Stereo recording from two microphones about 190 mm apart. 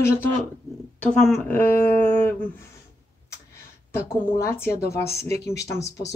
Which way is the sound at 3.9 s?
15° left (ahead or behind).